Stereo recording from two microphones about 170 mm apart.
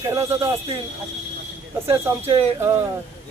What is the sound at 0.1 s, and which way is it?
Speech, 20° right (ahead or behind).